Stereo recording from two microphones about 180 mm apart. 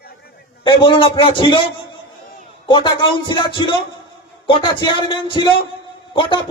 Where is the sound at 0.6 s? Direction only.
25° left (ahead or behind).